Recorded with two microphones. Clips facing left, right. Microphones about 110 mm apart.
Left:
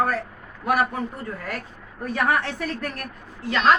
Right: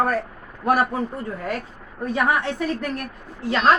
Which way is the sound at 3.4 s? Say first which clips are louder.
Right 2 dB; 35° right (ahead or behind).